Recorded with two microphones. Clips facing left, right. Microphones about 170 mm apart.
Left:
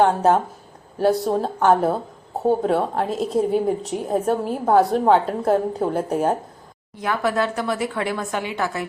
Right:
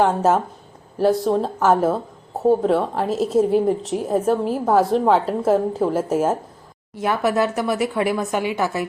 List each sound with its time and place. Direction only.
0.0 s a woman's voice: centre (ahead or behind)
7.0 s a woman's voice: 20° right (ahead or behind)